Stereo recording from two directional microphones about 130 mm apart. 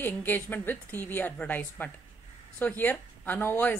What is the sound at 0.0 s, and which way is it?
Speech, 15° left (ahead or behind).